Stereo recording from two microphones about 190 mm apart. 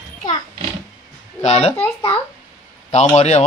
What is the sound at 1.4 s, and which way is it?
A child's voice, 30° left (ahead or behind).